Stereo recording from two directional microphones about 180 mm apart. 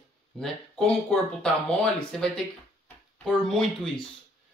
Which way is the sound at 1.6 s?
5° left (ahead or behind).